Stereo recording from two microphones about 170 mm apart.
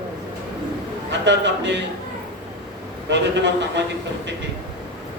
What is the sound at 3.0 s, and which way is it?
Speech, 90° right.